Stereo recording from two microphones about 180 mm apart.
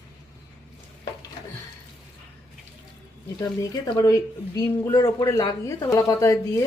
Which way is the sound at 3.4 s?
15° left (ahead or behind).